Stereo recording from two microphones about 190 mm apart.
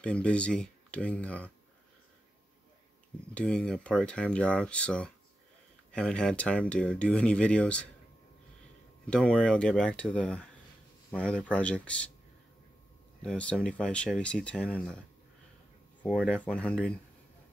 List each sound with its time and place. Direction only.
0.0 s speech: 5° left (ahead or behind)
3.3 s speech: 5° left (ahead or behind)
9.0 s speech: 5° left (ahead or behind)
13.2 s speech: 5° left (ahead or behind)
16.0 s speech: 5° left (ahead or behind)